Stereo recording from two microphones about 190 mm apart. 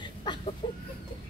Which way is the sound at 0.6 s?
25° left (ahead or behind).